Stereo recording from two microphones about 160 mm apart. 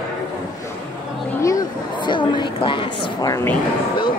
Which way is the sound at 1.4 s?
20° left (ahead or behind).